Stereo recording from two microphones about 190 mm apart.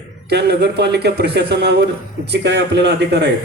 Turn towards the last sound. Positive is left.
turn(degrees=-60)  # may be behind; listen again after turning